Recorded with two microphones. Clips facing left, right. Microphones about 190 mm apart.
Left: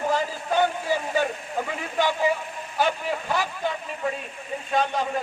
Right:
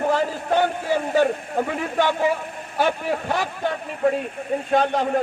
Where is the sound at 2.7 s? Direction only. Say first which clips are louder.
Right 3 dB; 55° right (ahead or behind).